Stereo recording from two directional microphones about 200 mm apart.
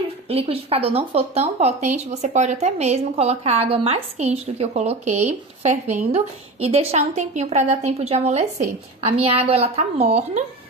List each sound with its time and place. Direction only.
0.3 s a woman's voice: 30° right (ahead or behind)